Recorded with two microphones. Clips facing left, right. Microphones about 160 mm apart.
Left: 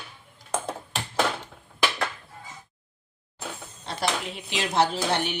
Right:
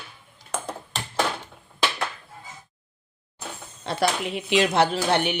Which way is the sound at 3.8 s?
70° right (ahead or behind).